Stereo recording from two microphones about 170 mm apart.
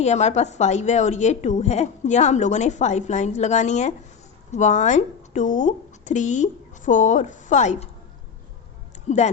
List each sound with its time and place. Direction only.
0.0 s a woman's voice: 40° left (ahead or behind)
9.0 s speech: 40° left (ahead or behind)